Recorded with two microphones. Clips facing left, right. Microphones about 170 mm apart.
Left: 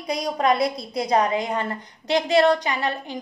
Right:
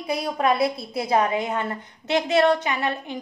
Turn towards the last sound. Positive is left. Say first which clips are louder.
# even
turn(degrees=0)  # may be behind; listen again after turning